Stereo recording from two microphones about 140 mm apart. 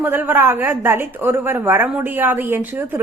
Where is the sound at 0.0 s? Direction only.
15° right (ahead or behind).